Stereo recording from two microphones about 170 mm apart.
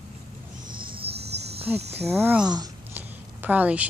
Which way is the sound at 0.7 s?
30° right (ahead or behind).